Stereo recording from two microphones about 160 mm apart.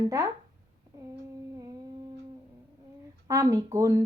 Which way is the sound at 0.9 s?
20° right (ahead or behind).